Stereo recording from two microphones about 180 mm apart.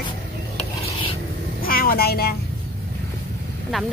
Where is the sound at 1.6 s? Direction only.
55° left (ahead or behind).